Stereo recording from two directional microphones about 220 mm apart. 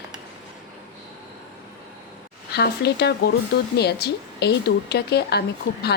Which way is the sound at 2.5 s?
45° left (ahead or behind).